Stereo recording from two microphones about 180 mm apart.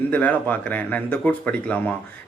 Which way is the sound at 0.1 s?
10° left (ahead or behind).